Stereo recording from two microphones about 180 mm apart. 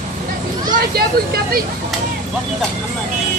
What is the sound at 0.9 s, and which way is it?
Speech, 60° right (ahead or behind).